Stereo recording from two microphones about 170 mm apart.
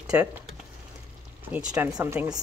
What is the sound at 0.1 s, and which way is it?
Speech, 10° right (ahead or behind).